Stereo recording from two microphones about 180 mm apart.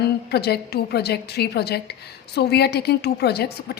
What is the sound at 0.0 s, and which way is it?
A woman's voice, 65° left (ahead or behind).